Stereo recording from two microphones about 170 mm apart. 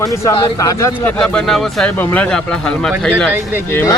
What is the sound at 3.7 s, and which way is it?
Speech, 15° left (ahead or behind).